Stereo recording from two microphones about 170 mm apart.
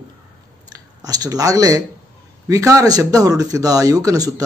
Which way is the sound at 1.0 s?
20° right (ahead or behind).